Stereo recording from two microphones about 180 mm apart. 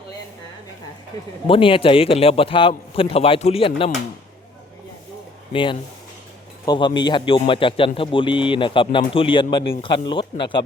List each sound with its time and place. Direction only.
1.5 s a man's voice: 30° left (ahead or behind)
5.5 s a man's voice: 30° left (ahead or behind)